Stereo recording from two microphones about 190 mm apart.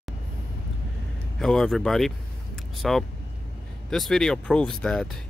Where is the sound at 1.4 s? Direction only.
Centre (ahead or behind).